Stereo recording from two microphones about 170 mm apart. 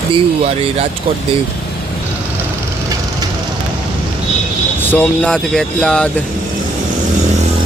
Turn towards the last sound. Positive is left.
turn(degrees=5)  # may be behind; listen again after turning